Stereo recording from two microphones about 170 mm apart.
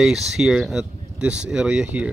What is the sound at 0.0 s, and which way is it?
Speech, 5° right (ahead or behind).